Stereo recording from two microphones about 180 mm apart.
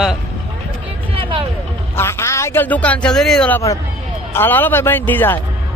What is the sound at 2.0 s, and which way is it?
A man's voice, 15° left (ahead or behind).